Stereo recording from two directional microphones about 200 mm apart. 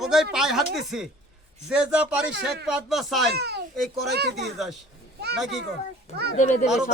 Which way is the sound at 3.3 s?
55° right (ahead or behind).